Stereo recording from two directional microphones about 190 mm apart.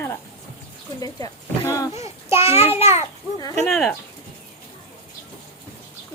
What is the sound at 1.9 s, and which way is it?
A child's voice, 35° left (ahead or behind).